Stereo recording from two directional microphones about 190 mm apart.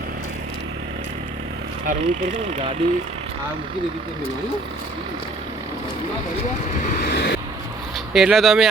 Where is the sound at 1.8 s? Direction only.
45° right (ahead or behind).